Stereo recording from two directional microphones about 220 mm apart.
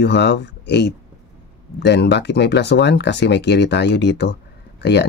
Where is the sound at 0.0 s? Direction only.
50° left (ahead or behind).